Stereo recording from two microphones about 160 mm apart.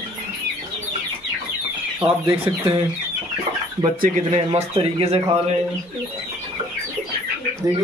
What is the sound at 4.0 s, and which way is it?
Speech, 50° right (ahead or behind).